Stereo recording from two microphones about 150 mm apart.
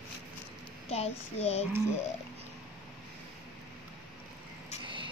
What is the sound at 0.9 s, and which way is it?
Speech, 45° left (ahead or behind).